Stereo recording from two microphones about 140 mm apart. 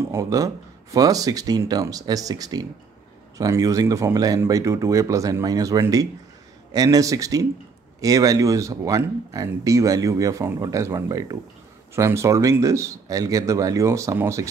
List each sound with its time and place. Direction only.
0.1 s speech: 25° right (ahead or behind)